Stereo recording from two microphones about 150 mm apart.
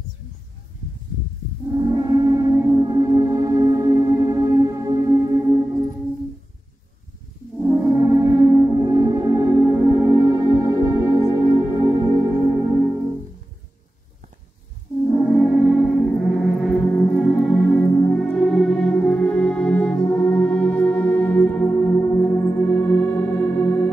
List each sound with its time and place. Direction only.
1.7 s gong: 25° right (ahead or behind)
7.6 s music: 15° right (ahead or behind)
15.1 s gong: 5° left (ahead or behind)
17.1 s music: centre (ahead or behind)
17.7 s music: 15° left (ahead or behind)
18.1 s music: 5° left (ahead or behind)